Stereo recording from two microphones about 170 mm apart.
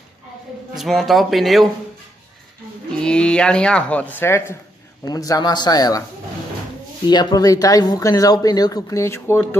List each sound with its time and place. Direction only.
0.7 s speech: centre (ahead or behind)
3.0 s speech: 5° left (ahead or behind); by 6.0 s 20° left (ahead or behind)
7.1 s speech: 25° left (ahead or behind)